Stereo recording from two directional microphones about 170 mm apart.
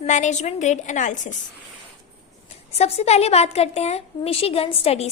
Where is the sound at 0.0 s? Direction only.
45° left (ahead or behind).